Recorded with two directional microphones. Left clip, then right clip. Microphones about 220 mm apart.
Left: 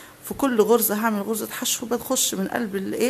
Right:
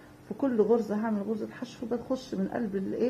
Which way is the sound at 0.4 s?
40° left (ahead or behind).